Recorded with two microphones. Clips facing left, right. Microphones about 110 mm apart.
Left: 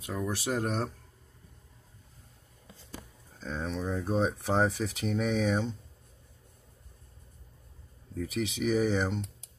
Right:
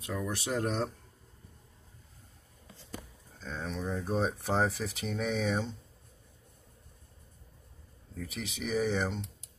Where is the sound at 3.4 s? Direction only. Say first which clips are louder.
Left 3 dB; 5° left (ahead or behind).